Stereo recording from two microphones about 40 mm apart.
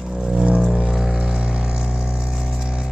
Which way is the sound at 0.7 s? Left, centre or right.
Centre.